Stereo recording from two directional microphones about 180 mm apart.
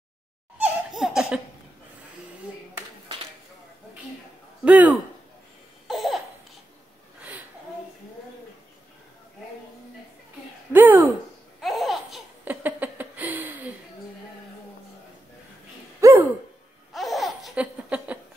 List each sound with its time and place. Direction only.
0.6 s laughter: centre (ahead or behind)
4.6 s speech: 10° right (ahead or behind)
5.9 s laughter: centre (ahead or behind)
10.7 s a sound: 10° right (ahead or behind)
11.6 s laughter: centre (ahead or behind)
12.4 s a sound: 10° right (ahead or behind)
16.0 s owl: 15° right (ahead or behind)
16.9 s laughter: centre (ahead or behind)